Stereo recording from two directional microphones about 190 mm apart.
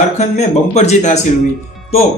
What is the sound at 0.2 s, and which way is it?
Speech, 35° left (ahead or behind).